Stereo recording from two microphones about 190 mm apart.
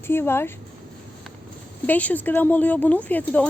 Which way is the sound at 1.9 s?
10° left (ahead or behind).